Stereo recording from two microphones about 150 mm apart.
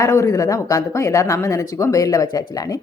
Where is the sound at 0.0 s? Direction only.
20° left (ahead or behind).